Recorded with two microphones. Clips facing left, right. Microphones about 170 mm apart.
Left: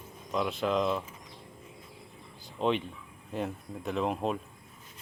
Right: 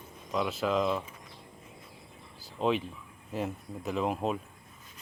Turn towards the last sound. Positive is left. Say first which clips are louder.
# even
turn(degrees=0)  # may be behind; listen again after turning